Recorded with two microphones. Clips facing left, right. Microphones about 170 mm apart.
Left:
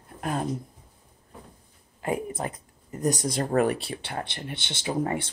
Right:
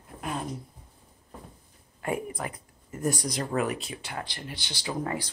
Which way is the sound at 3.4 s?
40° left (ahead or behind).